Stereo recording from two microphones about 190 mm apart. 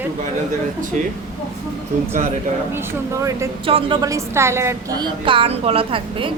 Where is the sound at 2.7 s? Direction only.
15° right (ahead or behind).